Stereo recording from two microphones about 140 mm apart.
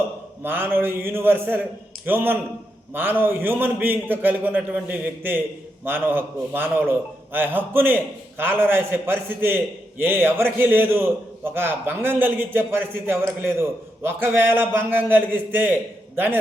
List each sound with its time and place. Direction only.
0.4 s a man's voice: 15° right (ahead or behind)